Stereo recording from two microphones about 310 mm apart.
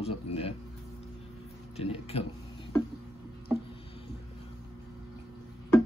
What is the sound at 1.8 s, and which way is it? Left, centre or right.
Speech, centre.